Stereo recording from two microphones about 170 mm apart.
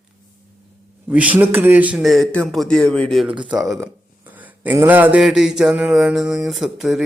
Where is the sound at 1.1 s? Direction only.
10° right (ahead or behind).